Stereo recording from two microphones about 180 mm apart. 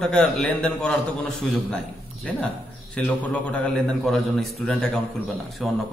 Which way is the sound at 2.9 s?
5° left (ahead or behind).